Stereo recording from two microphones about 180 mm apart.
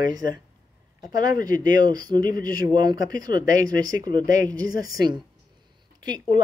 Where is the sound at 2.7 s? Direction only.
25° right (ahead or behind).